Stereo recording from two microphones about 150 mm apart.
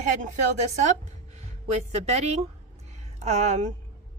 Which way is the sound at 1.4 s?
45° right (ahead or behind).